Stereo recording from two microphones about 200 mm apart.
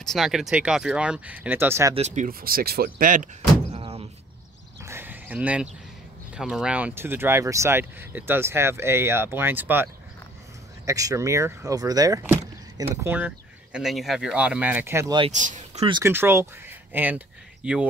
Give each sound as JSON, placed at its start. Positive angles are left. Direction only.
{"t": 0.0, "sound": "speech", "side_deg": 0}
{"t": 2.0, "sound": "speech", "side_deg": -35}
{"t": 3.7, "sound": "door", "side_deg": -30}
{"t": 4.8, "sound": "a sound", "side_deg": -10}
{"t": 6.3, "sound": "speech", "side_deg": -5}
{"t": 10.9, "sound": "speech", "side_deg": -15}
{"t": 15.3, "sound": "speech", "side_deg": -40}
{"t": 15.9, "sound": "speech", "side_deg": -10}